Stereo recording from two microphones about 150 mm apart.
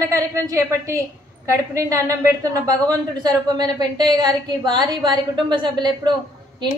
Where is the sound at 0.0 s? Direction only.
20° right (ahead or behind).